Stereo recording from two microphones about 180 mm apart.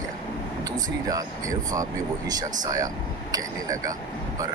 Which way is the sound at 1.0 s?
20° right (ahead or behind).